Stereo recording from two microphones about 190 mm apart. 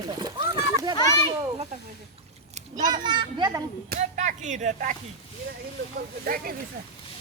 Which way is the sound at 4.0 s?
40° right (ahead or behind).